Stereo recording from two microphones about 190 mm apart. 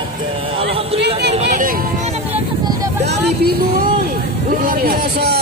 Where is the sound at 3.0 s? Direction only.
60° right (ahead or behind).